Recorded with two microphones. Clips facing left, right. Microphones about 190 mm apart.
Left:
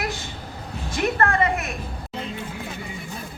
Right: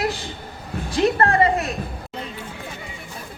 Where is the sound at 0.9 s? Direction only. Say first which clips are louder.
Right 4 dB; 35° right (ahead or behind).